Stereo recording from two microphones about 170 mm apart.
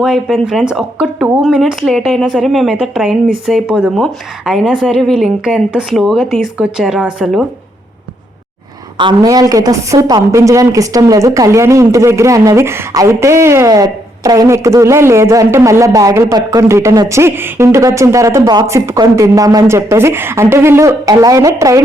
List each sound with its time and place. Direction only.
0.0 s speech: 5° right (ahead or behind)
9.0 s a woman's voice: 25° right (ahead or behind)